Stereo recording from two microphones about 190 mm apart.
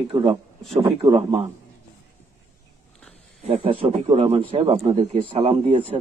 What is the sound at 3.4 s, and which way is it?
A man's voice, 30° right (ahead or behind).